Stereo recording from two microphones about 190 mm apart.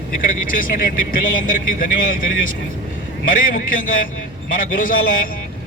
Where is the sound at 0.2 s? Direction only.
45° left (ahead or behind).